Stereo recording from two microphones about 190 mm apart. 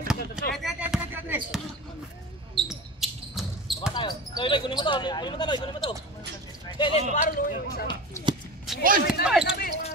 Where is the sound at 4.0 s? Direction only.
25° left (ahead or behind).